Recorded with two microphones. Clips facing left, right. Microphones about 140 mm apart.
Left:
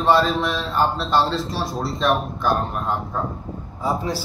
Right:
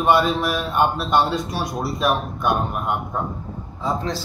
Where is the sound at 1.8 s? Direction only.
Centre (ahead or behind).